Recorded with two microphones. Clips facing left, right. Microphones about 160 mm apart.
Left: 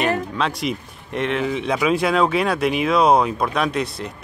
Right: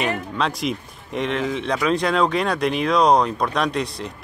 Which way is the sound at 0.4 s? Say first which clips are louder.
Even; centre (ahead or behind).